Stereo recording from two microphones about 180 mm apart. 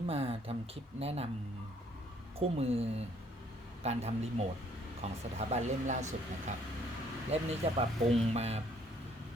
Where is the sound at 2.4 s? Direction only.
35° right (ahead or behind).